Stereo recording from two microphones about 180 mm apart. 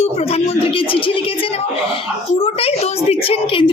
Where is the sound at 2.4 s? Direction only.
30° left (ahead or behind).